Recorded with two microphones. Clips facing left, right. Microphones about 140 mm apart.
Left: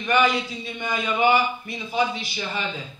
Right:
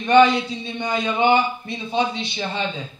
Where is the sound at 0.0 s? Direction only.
25° right (ahead or behind).